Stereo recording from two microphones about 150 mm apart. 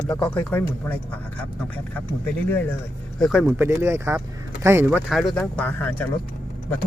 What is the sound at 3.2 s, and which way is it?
Speech, centre (ahead or behind).